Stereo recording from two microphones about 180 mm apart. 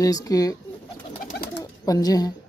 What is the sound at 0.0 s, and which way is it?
Speech, 20° left (ahead or behind).